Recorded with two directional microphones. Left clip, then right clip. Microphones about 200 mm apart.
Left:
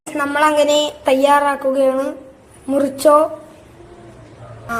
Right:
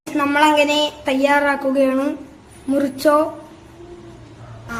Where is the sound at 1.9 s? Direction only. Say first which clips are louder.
Left 1 dB; 5° left (ahead or behind).